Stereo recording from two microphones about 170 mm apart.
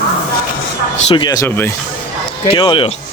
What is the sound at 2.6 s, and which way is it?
Speech, 30° left (ahead or behind).